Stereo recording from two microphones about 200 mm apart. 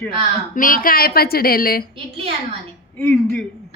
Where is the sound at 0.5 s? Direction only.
45° left (ahead or behind).